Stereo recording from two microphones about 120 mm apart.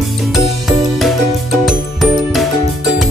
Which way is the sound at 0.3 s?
Centre (ahead or behind).